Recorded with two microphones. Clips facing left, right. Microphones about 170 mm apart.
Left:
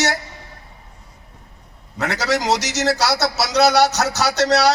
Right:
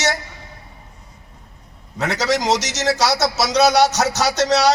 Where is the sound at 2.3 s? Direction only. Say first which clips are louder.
Even; 20° right (ahead or behind).